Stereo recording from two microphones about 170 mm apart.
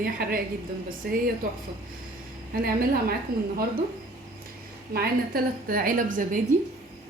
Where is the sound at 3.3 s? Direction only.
60° right (ahead or behind).